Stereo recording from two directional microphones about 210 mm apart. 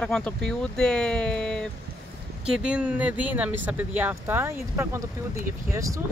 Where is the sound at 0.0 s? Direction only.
5° left (ahead or behind).